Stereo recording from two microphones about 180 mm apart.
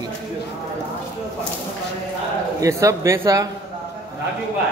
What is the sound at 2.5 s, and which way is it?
Speech, 15° right (ahead or behind).